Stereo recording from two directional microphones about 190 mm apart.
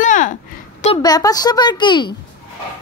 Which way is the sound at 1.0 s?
20° left (ahead or behind).